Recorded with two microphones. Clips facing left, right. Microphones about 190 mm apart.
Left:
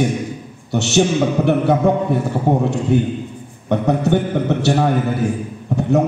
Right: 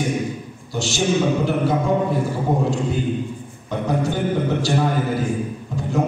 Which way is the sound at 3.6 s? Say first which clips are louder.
Left 6 dB; 65° left (ahead or behind).